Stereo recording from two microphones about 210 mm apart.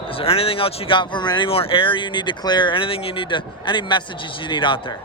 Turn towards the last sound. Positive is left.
turn(degrees=25)  # may be behind; listen again after turning